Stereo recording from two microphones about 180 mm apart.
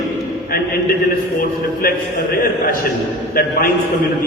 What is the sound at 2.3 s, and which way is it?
A man's voice, 50° left (ahead or behind).